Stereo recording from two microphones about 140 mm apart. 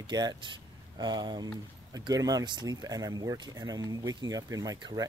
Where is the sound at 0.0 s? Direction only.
30° right (ahead or behind).